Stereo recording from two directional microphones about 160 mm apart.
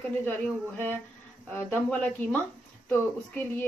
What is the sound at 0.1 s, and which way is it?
A woman's voice, 10° left (ahead or behind).